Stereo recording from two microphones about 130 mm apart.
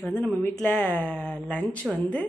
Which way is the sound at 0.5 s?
10° left (ahead or behind).